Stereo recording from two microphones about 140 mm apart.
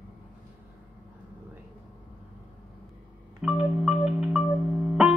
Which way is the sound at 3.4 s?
5° right (ahead or behind).